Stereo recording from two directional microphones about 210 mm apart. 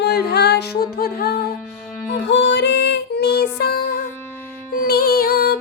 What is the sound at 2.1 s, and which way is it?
Music, 60° left (ahead or behind).